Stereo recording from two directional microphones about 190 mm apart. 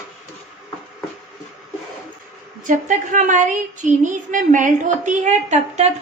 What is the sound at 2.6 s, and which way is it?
A woman's voice, 45° right (ahead or behind).